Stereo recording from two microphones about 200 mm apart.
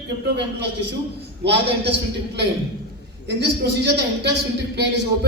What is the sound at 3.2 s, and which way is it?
A woman's voice, 55° right (ahead or behind).